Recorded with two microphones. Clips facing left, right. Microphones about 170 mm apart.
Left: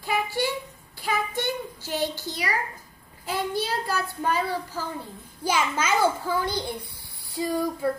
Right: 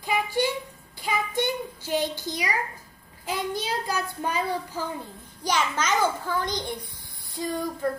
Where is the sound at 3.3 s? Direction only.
15° right (ahead or behind).